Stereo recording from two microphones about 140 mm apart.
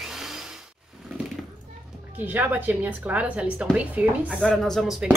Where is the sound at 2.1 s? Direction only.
15° right (ahead or behind).